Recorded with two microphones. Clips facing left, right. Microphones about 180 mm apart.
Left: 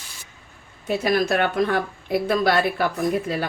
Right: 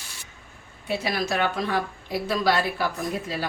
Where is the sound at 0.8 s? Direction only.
50° left (ahead or behind).